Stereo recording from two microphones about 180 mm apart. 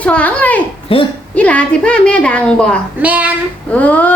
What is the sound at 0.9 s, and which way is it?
Speech, 30° left (ahead or behind).